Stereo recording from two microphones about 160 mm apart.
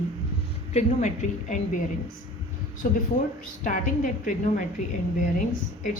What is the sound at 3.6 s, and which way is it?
Speech, 55° left (ahead or behind).